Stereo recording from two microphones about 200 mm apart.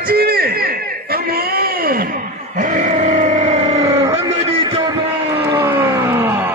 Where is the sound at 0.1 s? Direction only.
50° right (ahead or behind).